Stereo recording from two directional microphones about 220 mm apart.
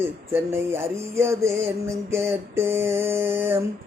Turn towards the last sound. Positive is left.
turn(degrees=-10)  # may be behind; listen again after turning